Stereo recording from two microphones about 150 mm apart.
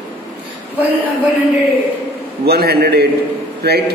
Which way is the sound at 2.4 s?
90° right.